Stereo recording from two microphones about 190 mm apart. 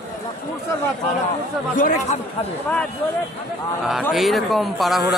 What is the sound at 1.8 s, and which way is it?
Speech, 40° left (ahead or behind).